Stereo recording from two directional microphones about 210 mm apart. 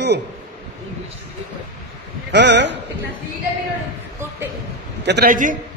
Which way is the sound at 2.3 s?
55° right (ahead or behind).